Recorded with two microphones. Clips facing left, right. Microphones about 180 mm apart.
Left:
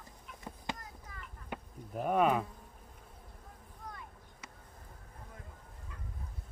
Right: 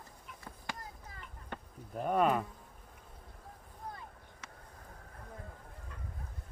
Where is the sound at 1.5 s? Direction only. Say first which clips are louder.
Left 2 dB; 5° left (ahead or behind).